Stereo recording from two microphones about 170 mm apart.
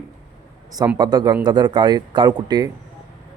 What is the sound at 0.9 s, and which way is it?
Speech, 25° right (ahead or behind).